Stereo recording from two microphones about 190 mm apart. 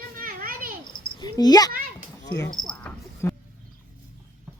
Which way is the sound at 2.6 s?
5° left (ahead or behind).